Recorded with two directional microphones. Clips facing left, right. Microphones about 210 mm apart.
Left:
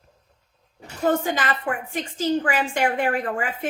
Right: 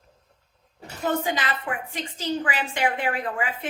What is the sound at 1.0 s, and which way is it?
A woman's voice, 45° left (ahead or behind).